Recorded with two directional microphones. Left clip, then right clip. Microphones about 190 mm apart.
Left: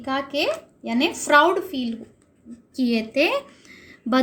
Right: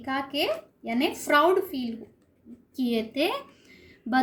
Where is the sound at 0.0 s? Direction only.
30° left (ahead or behind).